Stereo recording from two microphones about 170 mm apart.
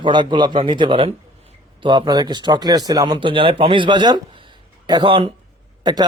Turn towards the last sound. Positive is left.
turn(degrees=-25)  # may be behind; listen again after turning